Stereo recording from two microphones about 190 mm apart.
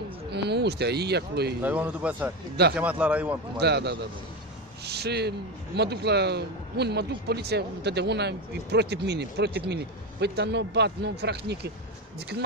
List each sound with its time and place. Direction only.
0.3 s speech: 60° right (ahead or behind)
1.6 s a man's voice: 10° right (ahead or behind)
3.5 s a man's voice: 60° right (ahead or behind)